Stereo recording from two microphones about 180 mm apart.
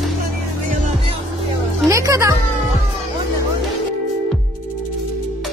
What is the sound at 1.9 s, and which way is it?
Music, 15° right (ahead or behind).